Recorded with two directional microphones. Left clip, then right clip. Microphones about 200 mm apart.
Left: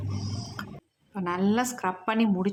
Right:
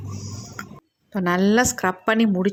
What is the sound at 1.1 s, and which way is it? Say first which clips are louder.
A woman's voice: right 8 dB; 25° right (ahead or behind).